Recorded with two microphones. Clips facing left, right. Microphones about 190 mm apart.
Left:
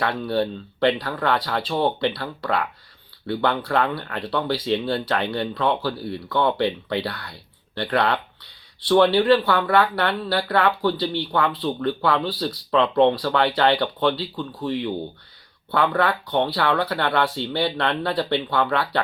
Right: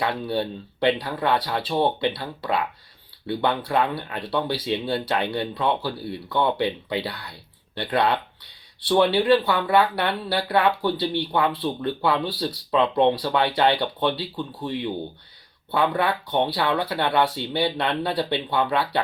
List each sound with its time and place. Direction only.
0.0 s speech: 15° right (ahead or behind)
8.9 s speech: 15° right (ahead or behind)